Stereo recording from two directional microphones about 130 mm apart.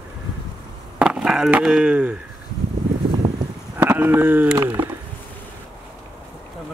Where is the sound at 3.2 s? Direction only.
20° right (ahead or behind).